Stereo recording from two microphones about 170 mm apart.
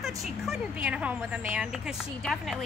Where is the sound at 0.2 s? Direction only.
5° right (ahead or behind).